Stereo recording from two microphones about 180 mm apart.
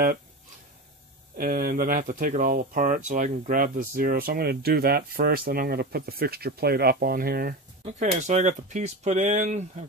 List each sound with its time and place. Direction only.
1.4 s speech: 55° right (ahead or behind)
7.8 s speech: 40° right (ahead or behind)